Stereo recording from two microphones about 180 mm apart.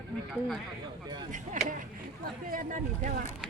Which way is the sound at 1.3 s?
45° right (ahead or behind).